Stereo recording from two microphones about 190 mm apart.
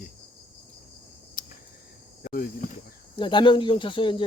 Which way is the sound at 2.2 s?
50° left (ahead or behind).